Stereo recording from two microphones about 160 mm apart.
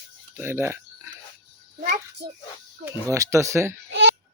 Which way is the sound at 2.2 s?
90° right.